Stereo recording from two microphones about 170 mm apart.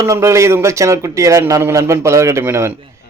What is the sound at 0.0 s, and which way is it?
A man's voice, 20° right (ahead or behind).